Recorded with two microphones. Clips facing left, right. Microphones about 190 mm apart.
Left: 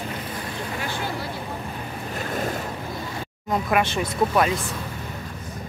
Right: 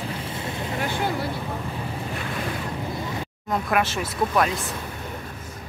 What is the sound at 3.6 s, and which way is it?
Speech, centre (ahead or behind).